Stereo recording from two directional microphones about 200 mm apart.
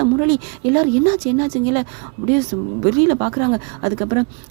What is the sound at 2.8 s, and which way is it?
Speech, 35° right (ahead or behind).